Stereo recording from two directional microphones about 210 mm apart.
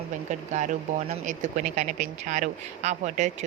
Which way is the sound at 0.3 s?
35° right (ahead or behind).